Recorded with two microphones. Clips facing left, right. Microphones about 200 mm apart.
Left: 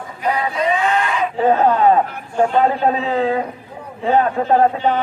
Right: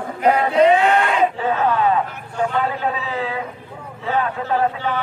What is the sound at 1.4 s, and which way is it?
Speech, 45° left (ahead or behind).